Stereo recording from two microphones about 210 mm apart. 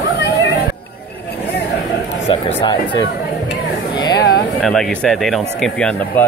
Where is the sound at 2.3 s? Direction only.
25° left (ahead or behind).